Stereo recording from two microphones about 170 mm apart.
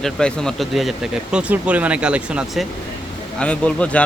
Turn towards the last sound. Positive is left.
turn(degrees=5)  # may be behind; listen again after turning